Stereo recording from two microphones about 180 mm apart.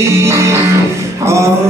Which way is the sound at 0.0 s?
15° right (ahead or behind).